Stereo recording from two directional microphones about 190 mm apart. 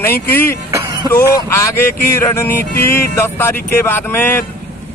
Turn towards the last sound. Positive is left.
turn(degrees=10)  # may be behind; listen again after turning